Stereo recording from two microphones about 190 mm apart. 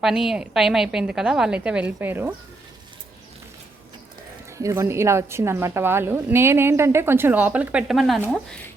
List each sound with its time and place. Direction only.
0.0 s a woman's voice: centre (ahead or behind)
4.5 s a woman's voice: 15° right (ahead or behind)